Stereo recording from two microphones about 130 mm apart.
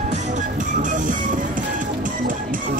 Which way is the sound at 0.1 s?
65° right (ahead or behind).